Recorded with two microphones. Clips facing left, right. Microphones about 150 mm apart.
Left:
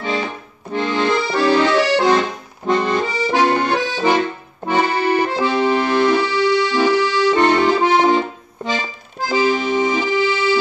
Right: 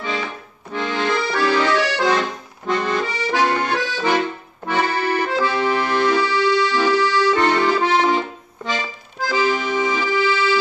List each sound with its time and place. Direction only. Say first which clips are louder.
0.0 s accordion: left 4 dB; 30° left (ahead or behind)
9.2 s accordion: left 2 dB; 30° left (ahead or behind)
9.9 s music: left 2 dB; 20° left (ahead or behind)